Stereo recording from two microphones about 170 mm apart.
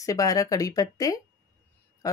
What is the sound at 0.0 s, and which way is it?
Speech, 20° left (ahead or behind).